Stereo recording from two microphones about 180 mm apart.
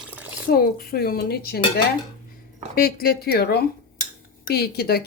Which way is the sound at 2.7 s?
55° left (ahead or behind).